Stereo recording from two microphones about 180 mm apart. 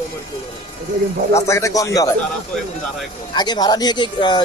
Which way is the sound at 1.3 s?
15° left (ahead or behind).